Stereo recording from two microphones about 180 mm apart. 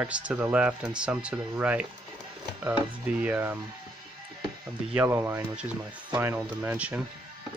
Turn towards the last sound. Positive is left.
turn(degrees=-5)  # may be behind; listen again after turning